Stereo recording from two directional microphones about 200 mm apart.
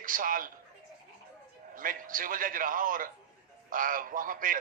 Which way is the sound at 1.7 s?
45° right (ahead or behind).